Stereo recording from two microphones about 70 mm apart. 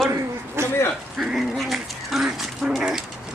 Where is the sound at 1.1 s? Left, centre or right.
Centre.